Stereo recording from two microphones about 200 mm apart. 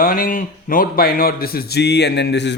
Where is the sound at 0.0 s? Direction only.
45° left (ahead or behind).